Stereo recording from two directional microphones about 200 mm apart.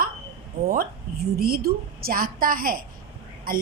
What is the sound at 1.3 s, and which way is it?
A woman's voice, 50° right (ahead or behind).